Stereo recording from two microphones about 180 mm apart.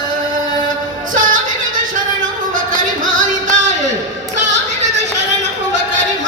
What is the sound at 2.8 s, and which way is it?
Music, 45° right (ahead or behind).